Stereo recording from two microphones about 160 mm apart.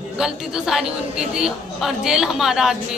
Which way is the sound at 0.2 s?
5° right (ahead or behind).